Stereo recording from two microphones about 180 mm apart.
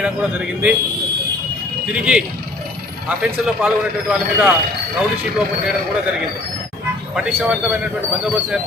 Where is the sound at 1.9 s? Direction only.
5° right (ahead or behind).